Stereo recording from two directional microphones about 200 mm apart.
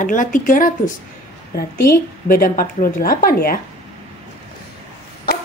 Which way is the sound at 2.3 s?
45° left (ahead or behind).